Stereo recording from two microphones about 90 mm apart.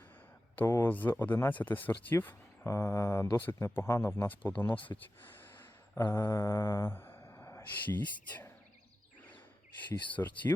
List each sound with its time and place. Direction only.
0.5 s speech: 30° left (ahead or behind)
6.1 s speech: 35° left (ahead or behind)
10.1 s speech: 20° left (ahead or behind)